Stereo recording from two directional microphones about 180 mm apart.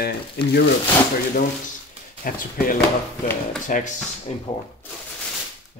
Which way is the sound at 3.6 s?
45° left (ahead or behind).